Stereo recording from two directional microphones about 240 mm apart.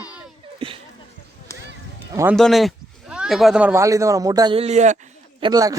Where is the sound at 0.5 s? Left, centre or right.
Right.